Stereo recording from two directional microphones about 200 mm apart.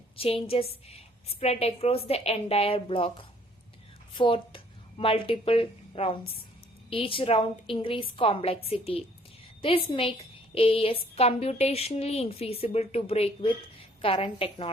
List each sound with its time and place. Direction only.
0.2 s a woman's voice: 30° left (ahead or behind)